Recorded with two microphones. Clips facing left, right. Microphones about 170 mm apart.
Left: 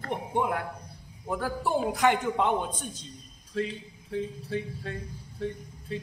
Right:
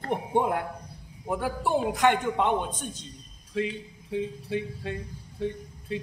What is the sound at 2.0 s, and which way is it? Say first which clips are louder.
Speech: even; 5° left (ahead or behind).